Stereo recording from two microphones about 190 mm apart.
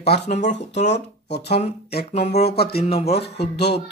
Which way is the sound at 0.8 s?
65° left (ahead or behind).